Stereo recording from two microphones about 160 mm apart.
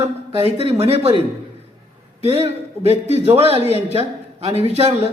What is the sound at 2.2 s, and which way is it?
A man's voice, 40° right (ahead or behind).